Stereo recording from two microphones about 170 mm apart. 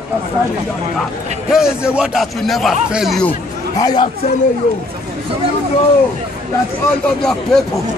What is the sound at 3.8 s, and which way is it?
Speech, 25° left (ahead or behind).